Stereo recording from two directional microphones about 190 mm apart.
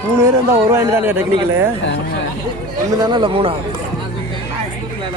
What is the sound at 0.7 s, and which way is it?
Speech, 10° right (ahead or behind).